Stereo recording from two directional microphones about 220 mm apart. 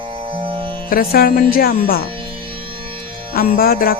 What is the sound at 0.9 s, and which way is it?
Speech, 40° left (ahead or behind).